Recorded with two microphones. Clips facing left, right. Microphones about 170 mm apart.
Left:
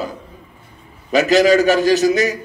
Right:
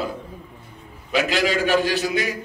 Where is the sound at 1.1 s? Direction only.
40° left (ahead or behind).